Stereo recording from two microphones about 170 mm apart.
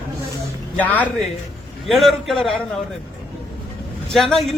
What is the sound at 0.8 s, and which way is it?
A man's voice, 10° left (ahead or behind).